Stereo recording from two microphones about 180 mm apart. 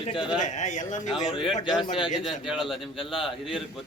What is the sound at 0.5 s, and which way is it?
Speech, 40° left (ahead or behind).